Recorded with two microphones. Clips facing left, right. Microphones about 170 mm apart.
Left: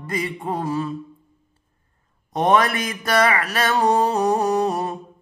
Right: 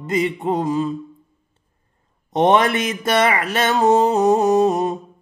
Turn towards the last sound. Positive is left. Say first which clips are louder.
# right 5 dB
turn(degrees=-20)  # may be behind; listen again after turning